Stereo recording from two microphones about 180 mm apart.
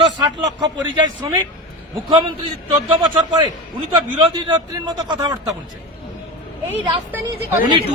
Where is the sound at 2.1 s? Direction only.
25° right (ahead or behind).